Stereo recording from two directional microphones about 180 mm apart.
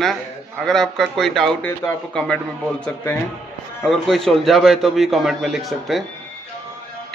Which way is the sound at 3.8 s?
Centre (ahead or behind).